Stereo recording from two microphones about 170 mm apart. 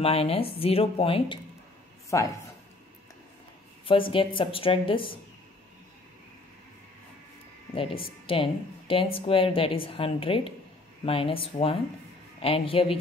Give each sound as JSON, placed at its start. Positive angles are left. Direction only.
{"t": 0.0, "sound": "a woman's voice", "side_deg": 35}
{"t": 2.0, "sound": "speech", "side_deg": 20}
{"t": 3.8, "sound": "a woman's voice", "side_deg": 30}
{"t": 7.7, "sound": "a woman's voice", "side_deg": 30}